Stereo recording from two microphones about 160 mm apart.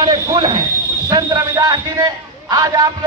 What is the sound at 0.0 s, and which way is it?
A man's voice, 25° right (ahead or behind).